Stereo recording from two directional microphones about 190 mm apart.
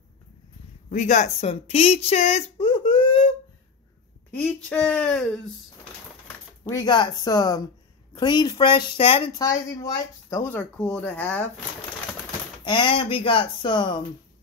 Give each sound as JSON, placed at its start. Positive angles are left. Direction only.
{"t": 0.8, "sound": "speech", "side_deg": 40}
{"t": 4.6, "sound": "speech", "side_deg": 5}
{"t": 6.7, "sound": "speech", "side_deg": 20}
{"t": 9.8, "sound": "speech", "side_deg": 15}
{"t": 12.6, "sound": "speech", "side_deg": 25}